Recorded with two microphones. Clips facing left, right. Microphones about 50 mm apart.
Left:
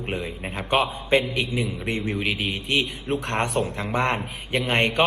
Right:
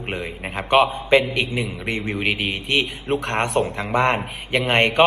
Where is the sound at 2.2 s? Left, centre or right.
Right.